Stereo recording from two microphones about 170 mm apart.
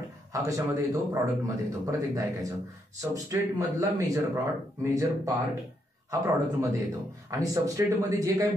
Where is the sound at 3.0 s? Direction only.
20° right (ahead or behind).